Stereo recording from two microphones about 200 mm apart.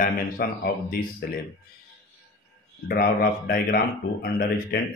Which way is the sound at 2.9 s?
50° left (ahead or behind).